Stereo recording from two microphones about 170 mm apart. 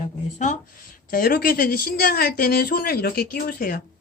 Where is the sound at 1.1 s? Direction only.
55° left (ahead or behind).